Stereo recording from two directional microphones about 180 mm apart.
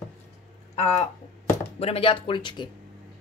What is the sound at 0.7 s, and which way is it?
Speech, 35° left (ahead or behind).